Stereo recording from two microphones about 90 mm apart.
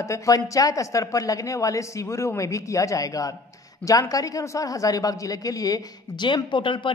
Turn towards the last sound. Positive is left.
turn(degrees=65)  # may be behind; listen again after turning